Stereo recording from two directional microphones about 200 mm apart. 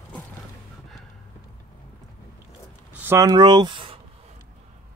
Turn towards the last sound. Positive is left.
turn(degrees=-25)  # may be behind; listen again after turning